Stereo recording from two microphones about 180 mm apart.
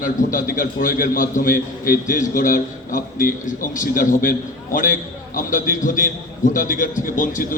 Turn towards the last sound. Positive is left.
turn(degrees=50)  # may be behind; listen again after turning